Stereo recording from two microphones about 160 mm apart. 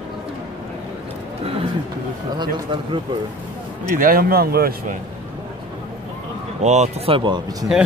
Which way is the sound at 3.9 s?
60° right (ahead or behind).